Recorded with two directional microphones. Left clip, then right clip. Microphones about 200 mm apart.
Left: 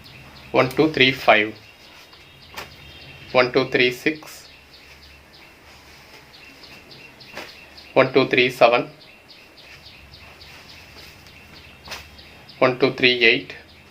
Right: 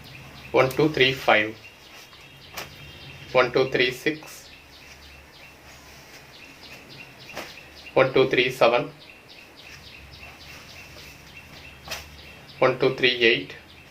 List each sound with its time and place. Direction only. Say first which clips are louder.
0.5 s speech: left 2 dB; 50° left (ahead or behind)
3.3 s speech: left 3 dB; 50° left (ahead or behind)
7.9 s speech: left 3 dB; 55° left (ahead or behind)
12.5 s speech: left 3 dB; 55° left (ahead or behind)